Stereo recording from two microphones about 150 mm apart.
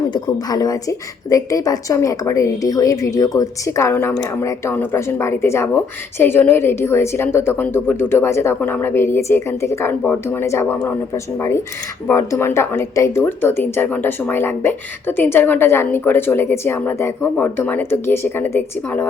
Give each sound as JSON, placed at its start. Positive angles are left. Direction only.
{"t": 0.1, "sound": "a woman's voice", "side_deg": 25}